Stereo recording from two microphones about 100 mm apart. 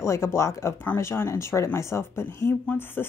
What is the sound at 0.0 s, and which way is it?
Speech, 25° left (ahead or behind).